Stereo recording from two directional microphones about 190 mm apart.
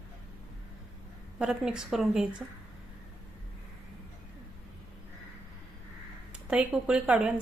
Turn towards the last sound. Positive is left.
turn(degrees=-5)  # may be behind; listen again after turning